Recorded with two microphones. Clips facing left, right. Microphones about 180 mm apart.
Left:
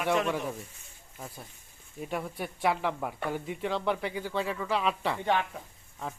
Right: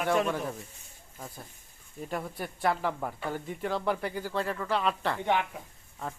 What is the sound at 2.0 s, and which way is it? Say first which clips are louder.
Speech: left 1 dB; centre (ahead or behind).